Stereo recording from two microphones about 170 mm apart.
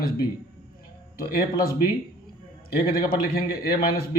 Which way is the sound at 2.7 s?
60° left (ahead or behind).